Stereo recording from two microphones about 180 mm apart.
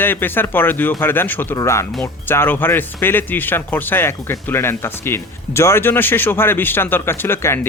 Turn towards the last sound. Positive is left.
turn(degrees=15)  # may be behind; listen again after turning